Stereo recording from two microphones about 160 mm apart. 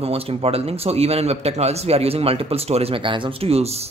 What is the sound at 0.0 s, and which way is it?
Speech, 40° right (ahead or behind).